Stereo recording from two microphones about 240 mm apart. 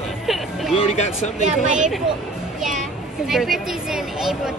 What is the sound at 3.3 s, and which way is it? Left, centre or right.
Speech, centre.